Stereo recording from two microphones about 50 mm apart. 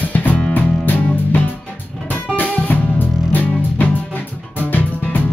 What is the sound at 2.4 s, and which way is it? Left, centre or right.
Music, left.